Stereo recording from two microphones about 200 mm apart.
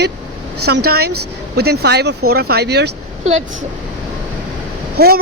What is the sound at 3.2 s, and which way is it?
Speech, 35° right (ahead or behind).